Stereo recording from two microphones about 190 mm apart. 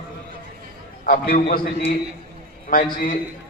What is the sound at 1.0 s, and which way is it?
A man's voice, 50° left (ahead or behind).